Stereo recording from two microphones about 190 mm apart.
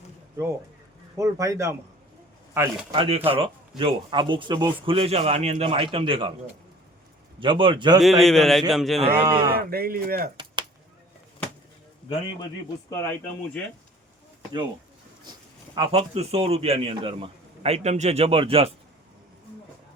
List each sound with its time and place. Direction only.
1.1 s speech: 15° right (ahead or behind)
2.9 s speech: 30° right (ahead or behind)
7.3 s speech: 25° right (ahead or behind)
8.0 s speech: centre (ahead or behind)
9.0 s speech: 25° right (ahead or behind)
9.6 s speech: 50° right (ahead or behind)
10.3 s chop: 25° right (ahead or behind)
12.0 s a man's voice: 25° left (ahead or behind)
15.3 s a man's voice: 25° right (ahead or behind)